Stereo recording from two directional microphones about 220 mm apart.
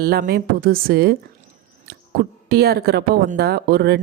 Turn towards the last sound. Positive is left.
turn(degrees=-45)  # may be behind; listen again after turning